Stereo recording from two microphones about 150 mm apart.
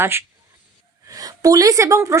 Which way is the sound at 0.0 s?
15° right (ahead or behind).